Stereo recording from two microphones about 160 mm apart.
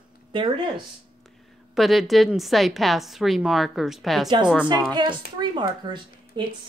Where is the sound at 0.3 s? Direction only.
30° right (ahead or behind).